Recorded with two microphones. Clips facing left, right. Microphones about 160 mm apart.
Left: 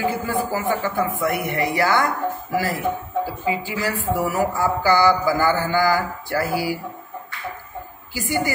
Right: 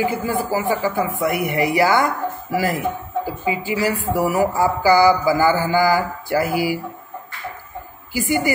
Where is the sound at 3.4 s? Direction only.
15° right (ahead or behind).